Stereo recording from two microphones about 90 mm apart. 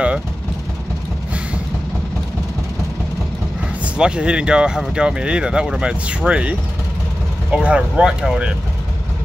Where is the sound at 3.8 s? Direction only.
10° right (ahead or behind).